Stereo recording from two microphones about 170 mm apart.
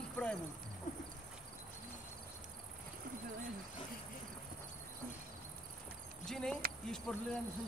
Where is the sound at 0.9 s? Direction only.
55° left (ahead or behind).